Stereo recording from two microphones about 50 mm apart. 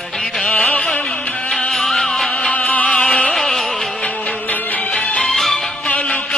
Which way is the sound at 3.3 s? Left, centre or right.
Centre.